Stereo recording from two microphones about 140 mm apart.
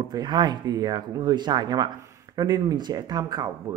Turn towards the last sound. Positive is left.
turn(degrees=-25)  # may be behind; listen again after turning